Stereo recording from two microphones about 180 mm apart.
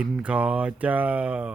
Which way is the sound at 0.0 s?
5° right (ahead or behind).